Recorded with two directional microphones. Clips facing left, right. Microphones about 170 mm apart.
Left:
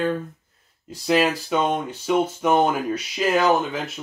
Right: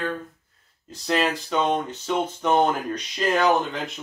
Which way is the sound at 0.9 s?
10° left (ahead or behind).